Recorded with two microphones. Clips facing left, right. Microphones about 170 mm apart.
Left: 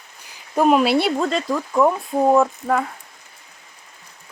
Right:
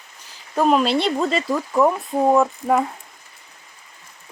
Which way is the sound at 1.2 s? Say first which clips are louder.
Even; centre (ahead or behind).